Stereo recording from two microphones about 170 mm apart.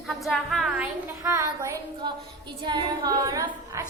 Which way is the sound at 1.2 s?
20° right (ahead or behind).